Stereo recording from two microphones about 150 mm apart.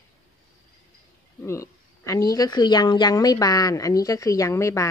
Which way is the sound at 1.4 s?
20° left (ahead or behind).